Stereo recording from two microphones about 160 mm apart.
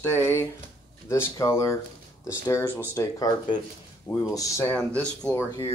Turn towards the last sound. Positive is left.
turn(degrees=10)  # may be behind; listen again after turning